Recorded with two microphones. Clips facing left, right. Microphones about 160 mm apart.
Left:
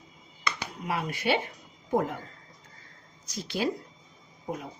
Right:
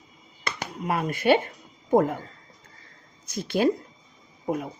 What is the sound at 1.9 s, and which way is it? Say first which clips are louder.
Speech: right 7 dB; 50° right (ahead or behind).